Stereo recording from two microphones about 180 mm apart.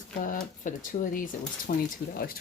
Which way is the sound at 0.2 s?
50° left (ahead or behind).